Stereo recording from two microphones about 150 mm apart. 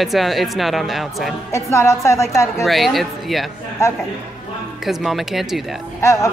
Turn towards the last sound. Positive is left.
turn(degrees=20)  # may be behind; listen again after turning